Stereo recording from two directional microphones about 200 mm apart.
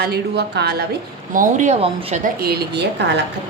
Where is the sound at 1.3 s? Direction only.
40° right (ahead or behind).